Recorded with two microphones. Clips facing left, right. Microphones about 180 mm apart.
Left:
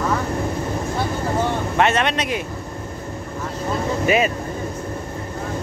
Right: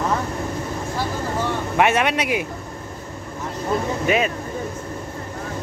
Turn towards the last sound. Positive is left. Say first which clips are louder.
# left 2 dB
turn(degrees=5)  # may be behind; listen again after turning